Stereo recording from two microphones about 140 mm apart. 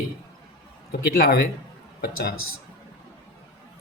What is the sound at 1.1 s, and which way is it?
Speech, 90° left.